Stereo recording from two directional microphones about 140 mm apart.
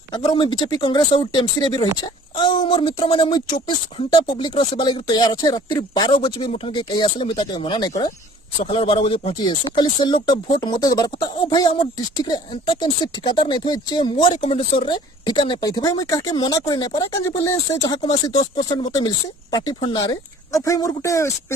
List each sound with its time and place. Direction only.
0.1 s speech: 35° left (ahead or behind)
8.5 s speech: 40° left (ahead or behind); by 21.5 s 20° left (ahead or behind)